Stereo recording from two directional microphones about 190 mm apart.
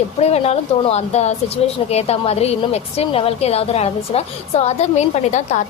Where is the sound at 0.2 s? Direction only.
35° left (ahead or behind).